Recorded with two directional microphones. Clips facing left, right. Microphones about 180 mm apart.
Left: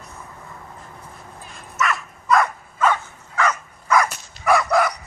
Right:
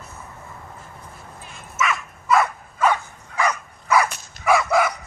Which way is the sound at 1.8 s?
5° right (ahead or behind).